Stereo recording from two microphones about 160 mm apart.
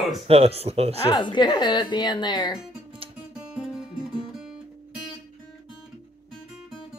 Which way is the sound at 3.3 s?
5° right (ahead or behind).